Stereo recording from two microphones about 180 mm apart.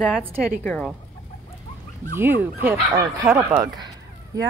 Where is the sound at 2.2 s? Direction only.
10° right (ahead or behind).